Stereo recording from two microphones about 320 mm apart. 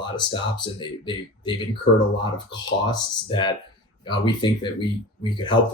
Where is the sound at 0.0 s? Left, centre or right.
Centre.